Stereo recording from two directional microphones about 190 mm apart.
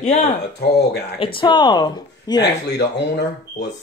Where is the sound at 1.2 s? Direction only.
25° left (ahead or behind).